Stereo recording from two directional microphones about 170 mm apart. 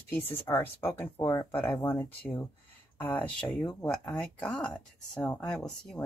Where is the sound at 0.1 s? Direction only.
10° left (ahead or behind).